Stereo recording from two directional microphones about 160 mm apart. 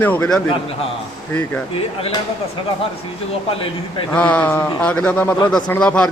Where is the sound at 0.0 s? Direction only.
10° left (ahead or behind).